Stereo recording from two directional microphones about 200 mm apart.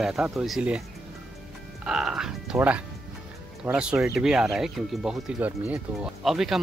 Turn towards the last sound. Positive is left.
turn(degrees=0)  # may be behind; listen again after turning